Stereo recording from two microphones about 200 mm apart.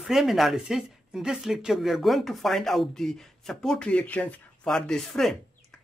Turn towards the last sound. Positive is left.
turn(degrees=0)  # may be behind; listen again after turning